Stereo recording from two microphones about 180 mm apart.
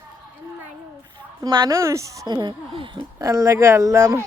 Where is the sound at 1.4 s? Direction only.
20° right (ahead or behind).